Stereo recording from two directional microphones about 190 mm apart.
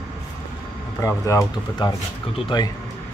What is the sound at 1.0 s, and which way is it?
Speech, 15° left (ahead or behind).